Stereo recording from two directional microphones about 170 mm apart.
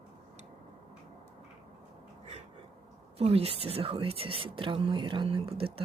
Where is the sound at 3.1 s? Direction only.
35° right (ahead or behind).